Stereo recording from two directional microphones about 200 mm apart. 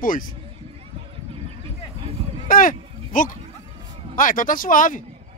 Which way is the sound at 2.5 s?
40° left (ahead or behind).